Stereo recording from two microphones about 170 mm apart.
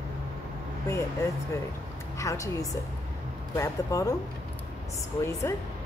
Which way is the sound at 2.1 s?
20° left (ahead or behind).